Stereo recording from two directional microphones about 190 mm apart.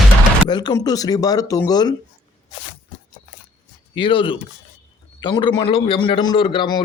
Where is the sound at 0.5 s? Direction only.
20° left (ahead or behind).